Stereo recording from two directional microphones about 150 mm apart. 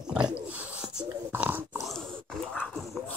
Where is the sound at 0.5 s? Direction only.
10° right (ahead or behind).